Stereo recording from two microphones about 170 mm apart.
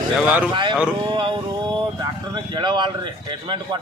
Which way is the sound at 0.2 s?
10° right (ahead or behind).